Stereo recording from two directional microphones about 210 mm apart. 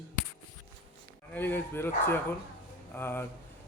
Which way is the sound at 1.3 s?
10° left (ahead or behind).